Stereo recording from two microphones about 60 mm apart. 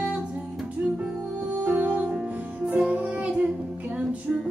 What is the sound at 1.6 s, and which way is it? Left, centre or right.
Music, right.